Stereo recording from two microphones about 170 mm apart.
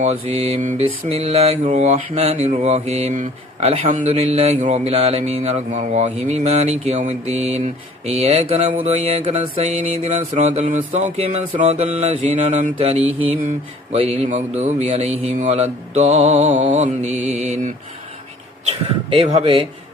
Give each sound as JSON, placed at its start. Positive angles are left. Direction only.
{"t": 0.0, "sound": "mantra", "side_deg": -40}
{"t": 19.1, "sound": "mantra", "side_deg": -35}